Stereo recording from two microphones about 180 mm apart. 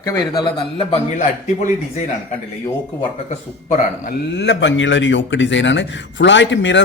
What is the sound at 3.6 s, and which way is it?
A man's voice, 60° left (ahead or behind).